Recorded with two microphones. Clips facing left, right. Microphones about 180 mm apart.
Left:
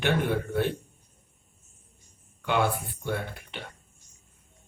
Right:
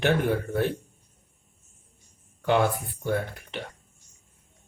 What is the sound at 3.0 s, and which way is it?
Speech, 40° right (ahead or behind).